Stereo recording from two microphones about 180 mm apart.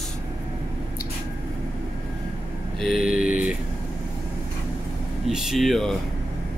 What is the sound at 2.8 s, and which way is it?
Mantra, centre (ahead or behind).